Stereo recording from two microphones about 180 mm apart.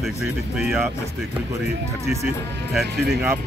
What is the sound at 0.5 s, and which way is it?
Speech, centre (ahead or behind).